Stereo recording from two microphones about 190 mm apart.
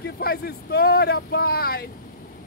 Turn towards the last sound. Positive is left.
turn(degrees=55)  # may be behind; listen again after turning